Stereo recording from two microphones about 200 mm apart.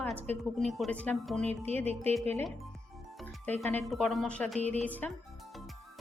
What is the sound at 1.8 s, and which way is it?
Speech, 30° right (ahead or behind).